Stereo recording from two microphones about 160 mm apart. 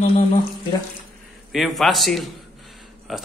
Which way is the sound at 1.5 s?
Centre (ahead or behind).